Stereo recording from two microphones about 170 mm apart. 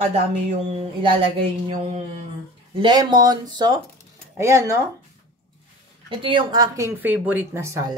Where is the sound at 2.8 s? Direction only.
25° right (ahead or behind).